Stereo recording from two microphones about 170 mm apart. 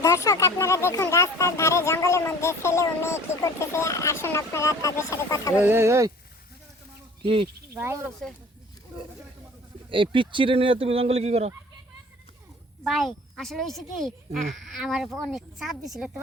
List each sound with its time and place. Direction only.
0.0 s speech: 20° left (ahead or behind)
5.6 s speech: 15° right (ahead or behind)
7.7 s speech: 15° right (ahead or behind)
9.9 s speech: 30° right (ahead or behind)
12.8 s a woman's voice: centre (ahead or behind)